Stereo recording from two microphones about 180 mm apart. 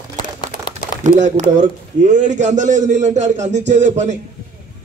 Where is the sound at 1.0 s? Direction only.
40° right (ahead or behind).